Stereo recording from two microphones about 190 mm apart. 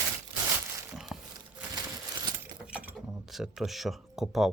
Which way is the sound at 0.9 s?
Centre (ahead or behind).